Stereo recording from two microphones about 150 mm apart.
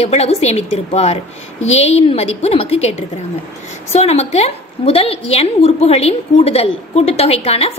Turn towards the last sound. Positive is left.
turn(degrees=40)  # may be behind; listen again after turning